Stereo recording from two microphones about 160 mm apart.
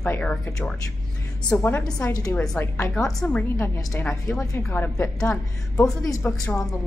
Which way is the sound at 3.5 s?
15° left (ahead or behind).